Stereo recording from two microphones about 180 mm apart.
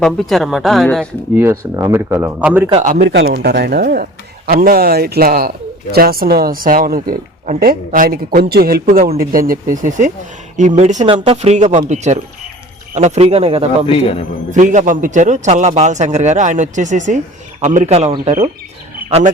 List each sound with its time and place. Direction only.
0.0 s speech: centre (ahead or behind)
1.4 s speech: 15° right (ahead or behind)
3.0 s speech: 75° right (ahead or behind); by 13.7 s 35° right (ahead or behind)
13.8 s a man's voice: 30° left (ahead or behind)
14.5 s a man's voice: 45° right (ahead or behind)